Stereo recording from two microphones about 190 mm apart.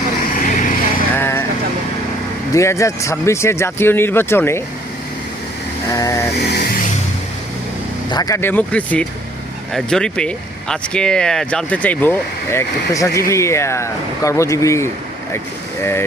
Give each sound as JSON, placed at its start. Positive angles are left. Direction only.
{"t": 0.4, "sound": "vehicle", "side_deg": 45}
{"t": 1.1, "sound": "vehicle", "side_deg": 10}
{"t": 2.5, "sound": "speech", "side_deg": 15}
{"t": 5.9, "sound": "speech", "side_deg": 15}
{"t": 8.1, "sound": "speech", "side_deg": 20}